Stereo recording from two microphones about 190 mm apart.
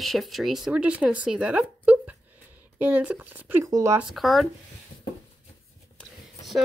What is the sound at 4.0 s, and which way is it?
Speech, centre (ahead or behind).